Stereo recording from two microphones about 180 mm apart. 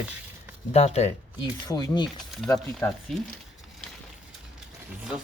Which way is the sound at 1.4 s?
20° left (ahead or behind).